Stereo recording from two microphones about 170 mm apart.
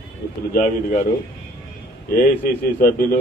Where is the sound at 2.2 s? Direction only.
55° left (ahead or behind).